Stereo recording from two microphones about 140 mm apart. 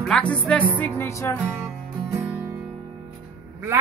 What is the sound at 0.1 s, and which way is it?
Music, 10° left (ahead or behind).